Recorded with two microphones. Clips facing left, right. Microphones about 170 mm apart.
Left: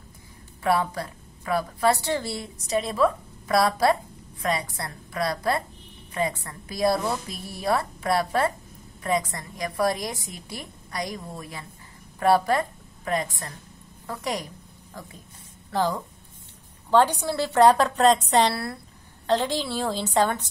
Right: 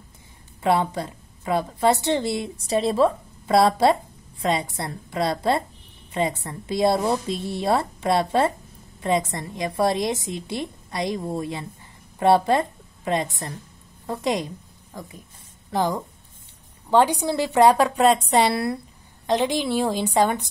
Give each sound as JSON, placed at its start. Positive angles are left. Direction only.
{"t": 0.6, "sound": "a woman's voice", "side_deg": -20}
{"t": 15.7, "sound": "a woman's voice", "side_deg": -15}